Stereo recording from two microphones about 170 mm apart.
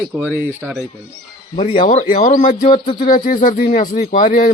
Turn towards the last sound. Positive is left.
turn(degrees=50)  # may be behind; listen again after turning